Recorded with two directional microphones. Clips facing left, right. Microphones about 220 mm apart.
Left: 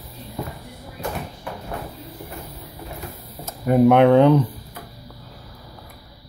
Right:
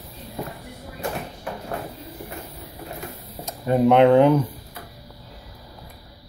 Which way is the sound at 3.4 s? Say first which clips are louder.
Left 2 dB; 10° left (ahead or behind).